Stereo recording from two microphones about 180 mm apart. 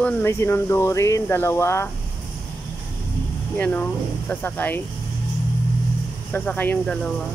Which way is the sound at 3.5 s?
10° left (ahead or behind).